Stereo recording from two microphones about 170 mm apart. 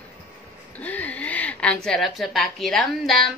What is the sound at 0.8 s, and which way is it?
Speech, 10° left (ahead or behind).